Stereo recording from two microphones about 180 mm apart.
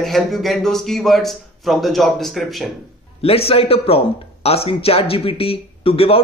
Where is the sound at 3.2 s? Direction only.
30° left (ahead or behind).